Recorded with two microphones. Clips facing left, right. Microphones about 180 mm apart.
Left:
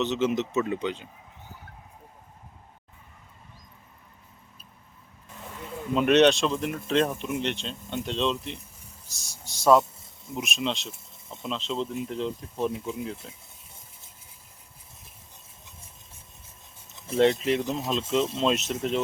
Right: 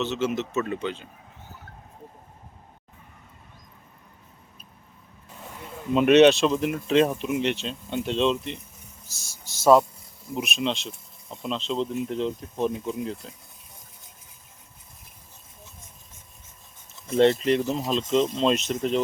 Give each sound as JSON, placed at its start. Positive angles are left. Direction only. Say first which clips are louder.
{"t": 0.0, "sound": "speech", "louder": "left 1 dB", "side_deg": 20}
{"t": 5.9, "sound": "speech", "louder": "right 4 dB", "side_deg": -5}
{"t": 17.2, "sound": "speech", "louder": "right 2 dB", "side_deg": 0}